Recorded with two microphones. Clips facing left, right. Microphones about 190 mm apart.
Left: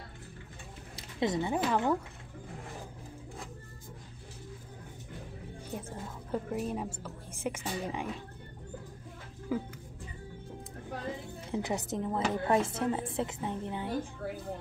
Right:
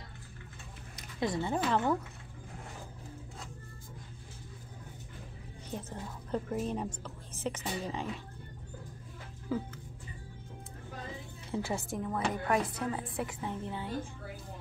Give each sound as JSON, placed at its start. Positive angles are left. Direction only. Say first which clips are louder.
{"t": 0.9, "sound": "speech", "louder": "left 2 dB", "side_deg": 20}
{"t": 5.8, "sound": "a woman's voice", "louder": "left 1 dB", "side_deg": 10}
{"t": 9.5, "sound": "a woman's voice", "louder": "left 1 dB", "side_deg": 10}
{"t": 11.5, "sound": "a woman's voice", "louder": "left 2 dB", "side_deg": 20}